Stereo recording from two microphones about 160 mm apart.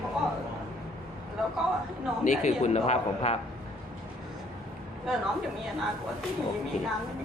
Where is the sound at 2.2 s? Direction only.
50° left (ahead or behind).